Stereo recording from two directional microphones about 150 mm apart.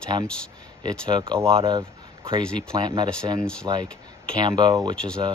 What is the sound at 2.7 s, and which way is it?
Speech, 25° right (ahead or behind).